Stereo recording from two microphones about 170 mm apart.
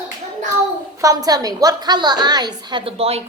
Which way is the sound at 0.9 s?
20° right (ahead or behind).